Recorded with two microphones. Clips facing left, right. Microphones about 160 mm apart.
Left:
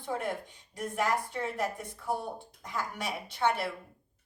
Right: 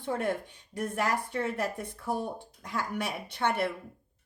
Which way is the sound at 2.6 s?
55° right (ahead or behind).